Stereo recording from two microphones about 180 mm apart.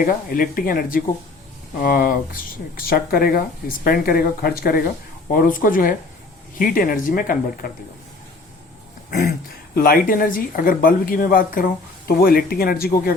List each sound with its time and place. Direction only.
0.0 s speech: 50° left (ahead or behind)
9.0 s throat clearing: 55° left (ahead or behind)
9.7 s speech: 55° left (ahead or behind)